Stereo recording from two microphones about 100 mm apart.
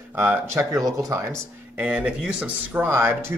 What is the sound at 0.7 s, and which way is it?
Speech, 35° right (ahead or behind).